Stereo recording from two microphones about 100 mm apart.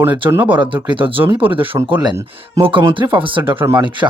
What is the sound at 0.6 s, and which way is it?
Speech, 55° right (ahead or behind).